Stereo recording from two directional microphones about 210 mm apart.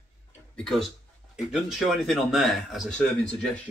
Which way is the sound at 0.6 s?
5° left (ahead or behind).